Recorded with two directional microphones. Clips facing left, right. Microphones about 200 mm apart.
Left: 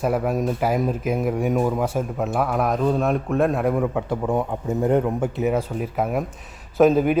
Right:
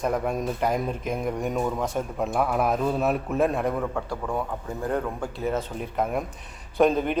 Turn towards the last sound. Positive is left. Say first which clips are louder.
# left 5 dB
turn(degrees=5)  # may be behind; listen again after turning